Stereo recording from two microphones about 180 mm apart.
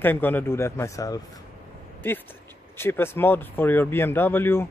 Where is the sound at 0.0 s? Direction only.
10° left (ahead or behind).